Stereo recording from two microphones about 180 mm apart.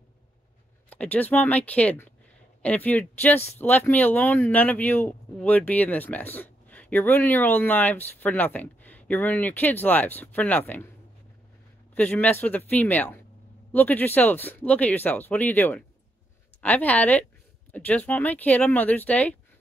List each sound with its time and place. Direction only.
0.8 s speech: 10° left (ahead or behind)
11.9 s speech: 10° left (ahead or behind)